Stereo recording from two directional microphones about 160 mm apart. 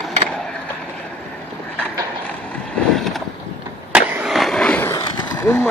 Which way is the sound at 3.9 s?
5° right (ahead or behind).